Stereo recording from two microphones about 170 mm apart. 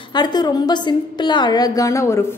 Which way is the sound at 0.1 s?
25° left (ahead or behind).